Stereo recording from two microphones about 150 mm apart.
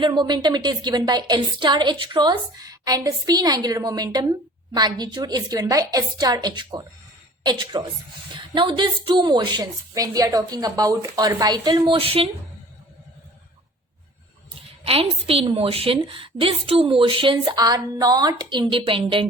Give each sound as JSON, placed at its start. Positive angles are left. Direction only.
{"t": 0.0, "sound": "a woman's voice", "side_deg": -30}
{"t": 14.8, "sound": "speech", "side_deg": -40}